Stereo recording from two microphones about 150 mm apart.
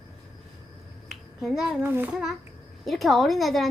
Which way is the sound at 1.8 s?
10° right (ahead or behind).